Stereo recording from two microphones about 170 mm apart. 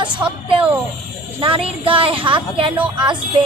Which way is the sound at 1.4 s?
30° right (ahead or behind).